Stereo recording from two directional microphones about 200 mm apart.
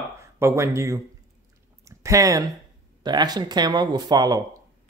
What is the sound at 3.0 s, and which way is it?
Speech, 20° right (ahead or behind).